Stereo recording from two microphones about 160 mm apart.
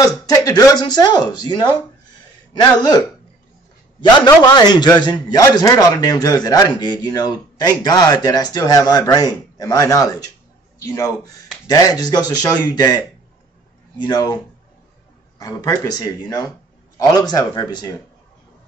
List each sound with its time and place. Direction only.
0.0 s speech: 20° left (ahead or behind)
4.6 s a man's voice: 25° left (ahead or behind)